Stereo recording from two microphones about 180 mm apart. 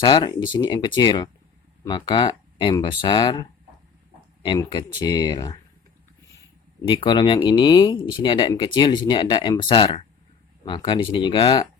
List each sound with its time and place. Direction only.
0.0 s speech: 25° left (ahead or behind)
4.4 s speech: 25° left (ahead or behind)
6.8 s speech: 25° left (ahead or behind)